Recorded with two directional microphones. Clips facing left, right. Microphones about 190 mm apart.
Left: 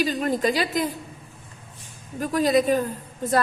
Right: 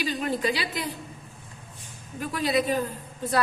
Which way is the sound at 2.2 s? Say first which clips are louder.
Left 5 dB; 45° left (ahead or behind).